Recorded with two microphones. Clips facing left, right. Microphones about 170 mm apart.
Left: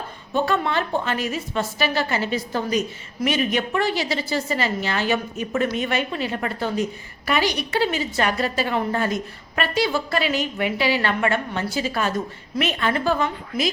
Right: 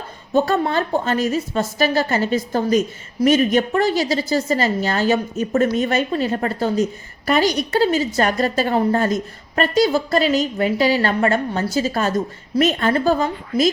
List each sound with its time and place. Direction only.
0.3 s a woman's voice: 40° right (ahead or behind)